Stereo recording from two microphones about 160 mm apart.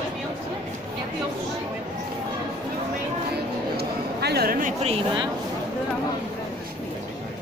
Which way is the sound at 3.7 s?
85° right.